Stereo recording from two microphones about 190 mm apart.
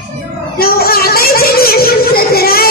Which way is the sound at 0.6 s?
55° left (ahead or behind).